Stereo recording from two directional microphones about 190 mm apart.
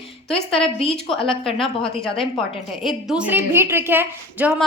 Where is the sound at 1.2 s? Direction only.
30° left (ahead or behind).